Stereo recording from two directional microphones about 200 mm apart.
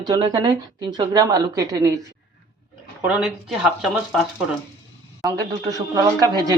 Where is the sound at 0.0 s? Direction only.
20° right (ahead or behind).